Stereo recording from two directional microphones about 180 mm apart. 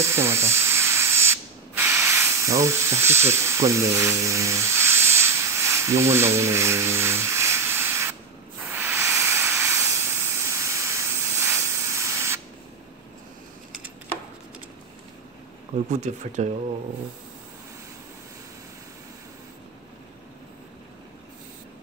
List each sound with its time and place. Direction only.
0.0 s spray: 15° right (ahead or behind)
8.6 s hiss: 10° right (ahead or behind)
15.9 s speech: 40° right (ahead or behind)